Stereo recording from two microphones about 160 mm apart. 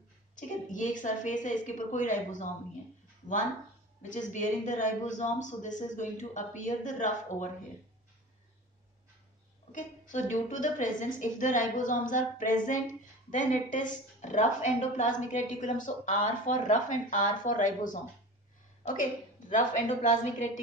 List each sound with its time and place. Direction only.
0.4 s a woman's voice: 50° left (ahead or behind)
4.0 s a woman's voice: 50° left (ahead or behind)
9.7 s a woman's voice: 55° left (ahead or behind)